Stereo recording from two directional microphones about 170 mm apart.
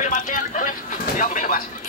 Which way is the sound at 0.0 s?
50° left (ahead or behind).